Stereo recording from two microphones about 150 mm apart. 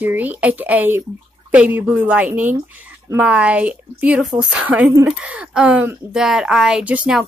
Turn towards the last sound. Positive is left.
turn(degrees=-5)  # may be behind; listen again after turning